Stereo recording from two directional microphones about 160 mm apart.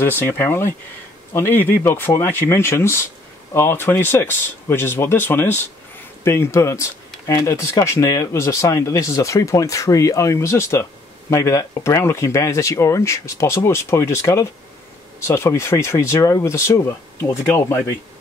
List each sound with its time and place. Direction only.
0.0 s speech: 15° left (ahead or behind)